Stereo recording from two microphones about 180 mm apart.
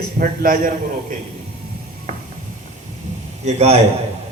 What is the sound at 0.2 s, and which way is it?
Speech, 50° right (ahead or behind).